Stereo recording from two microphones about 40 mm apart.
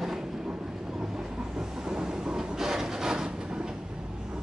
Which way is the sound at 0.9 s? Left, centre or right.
Centre.